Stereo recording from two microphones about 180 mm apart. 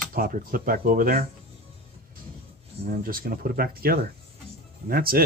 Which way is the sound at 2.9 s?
55° right (ahead or behind).